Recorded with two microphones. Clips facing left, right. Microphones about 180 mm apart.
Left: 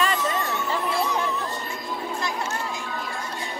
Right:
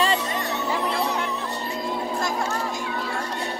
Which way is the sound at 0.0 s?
30° right (ahead or behind).